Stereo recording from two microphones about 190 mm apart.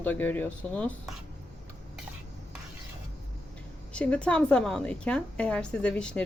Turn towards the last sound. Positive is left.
turn(degrees=5)  # may be behind; listen again after turning